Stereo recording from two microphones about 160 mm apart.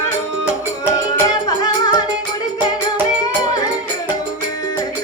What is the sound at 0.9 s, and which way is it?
Music, 20° left (ahead or behind).